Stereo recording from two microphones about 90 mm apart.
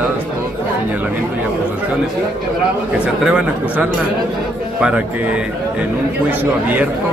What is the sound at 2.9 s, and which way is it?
A man's voice, 10° right (ahead or behind).